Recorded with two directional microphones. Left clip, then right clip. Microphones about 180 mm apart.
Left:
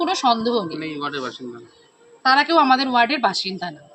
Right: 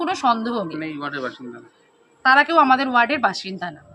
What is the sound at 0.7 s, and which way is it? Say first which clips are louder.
Speech: left 1 dB; 30° right (ahead or behind).